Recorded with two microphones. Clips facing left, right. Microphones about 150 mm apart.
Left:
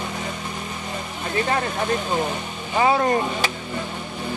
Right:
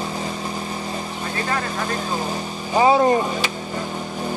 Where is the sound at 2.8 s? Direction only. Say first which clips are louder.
Right 4 dB; 25° right (ahead or behind).